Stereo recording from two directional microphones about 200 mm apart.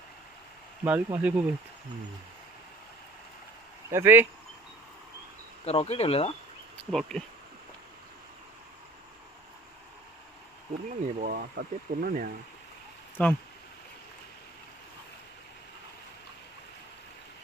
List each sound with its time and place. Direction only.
0.9 s speech: 10° right (ahead or behind)
3.8 s speech: 10° right (ahead or behind)
5.6 s speech: 30° left (ahead or behind)
6.9 s speech: 5° left (ahead or behind)
10.8 s speech: 45° right (ahead or behind)
13.2 s speech: 10° left (ahead or behind)